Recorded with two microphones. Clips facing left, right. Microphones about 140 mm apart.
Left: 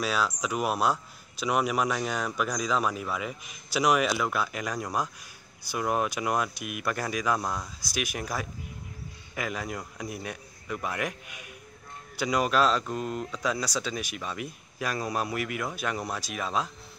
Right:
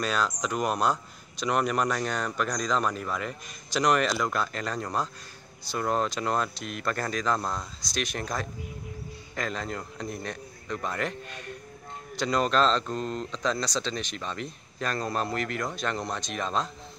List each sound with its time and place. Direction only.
0.0 s a man's voice: 5° left (ahead or behind)